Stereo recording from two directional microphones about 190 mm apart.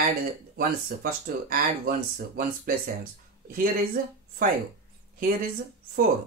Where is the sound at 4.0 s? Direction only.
50° right (ahead or behind).